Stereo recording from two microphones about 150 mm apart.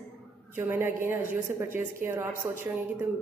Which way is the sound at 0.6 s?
15° right (ahead or behind).